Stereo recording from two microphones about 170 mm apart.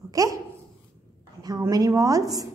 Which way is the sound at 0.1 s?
20° right (ahead or behind).